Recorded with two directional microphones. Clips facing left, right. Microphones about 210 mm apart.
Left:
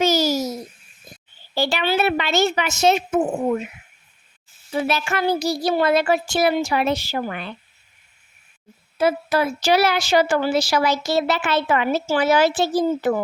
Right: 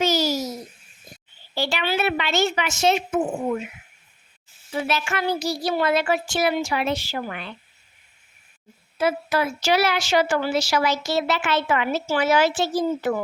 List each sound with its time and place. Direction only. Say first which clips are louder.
0.0 s babbling: left 3 dB; 45° left (ahead or behind)
1.5 s speech: left 4 dB; 40° left (ahead or behind)
4.8 s speech: left 3 dB; 40° left (ahead or behind)
9.0 s speech: left 3 dB; 35° left (ahead or behind)